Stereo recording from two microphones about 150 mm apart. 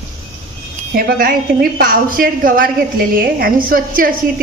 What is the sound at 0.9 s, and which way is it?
A woman's voice, 75° right (ahead or behind).